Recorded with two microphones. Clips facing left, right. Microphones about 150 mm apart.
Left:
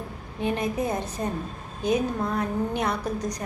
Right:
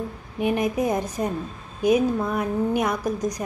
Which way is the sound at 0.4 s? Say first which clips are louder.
Right 4 dB; 15° right (ahead or behind).